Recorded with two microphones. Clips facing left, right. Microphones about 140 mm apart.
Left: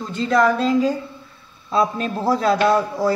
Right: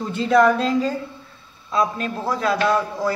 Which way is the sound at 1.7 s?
30° left (ahead or behind).